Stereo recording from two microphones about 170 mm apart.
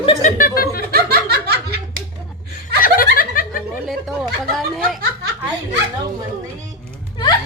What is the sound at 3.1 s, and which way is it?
Snicker, 55° left (ahead or behind).